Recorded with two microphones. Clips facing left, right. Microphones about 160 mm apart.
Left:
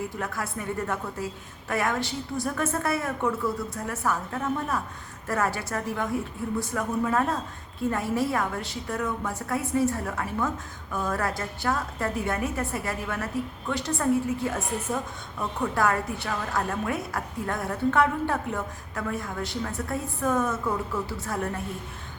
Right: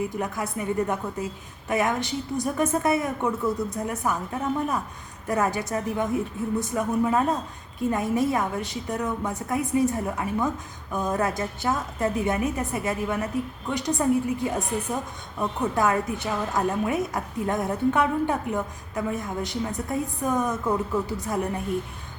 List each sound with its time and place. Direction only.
0.2 s a woman's voice: 20° right (ahead or behind)